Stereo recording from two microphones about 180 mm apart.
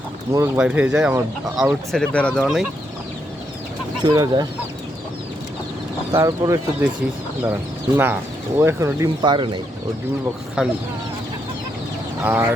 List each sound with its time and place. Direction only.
0.3 s speech: 15° right (ahead or behind); by 2.6 s centre (ahead or behind)
4.0 s speech: 20° right (ahead or behind)
6.1 s speech: 15° right (ahead or behind)
10.6 s speech: 5° right (ahead or behind)
12.2 s speech: 10° right (ahead or behind)